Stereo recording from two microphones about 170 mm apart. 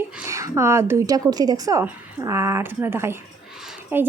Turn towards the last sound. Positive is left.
turn(degrees=-10)  # may be behind; listen again after turning